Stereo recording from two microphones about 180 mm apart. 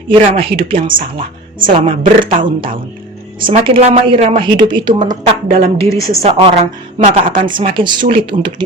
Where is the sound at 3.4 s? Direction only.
30° right (ahead or behind).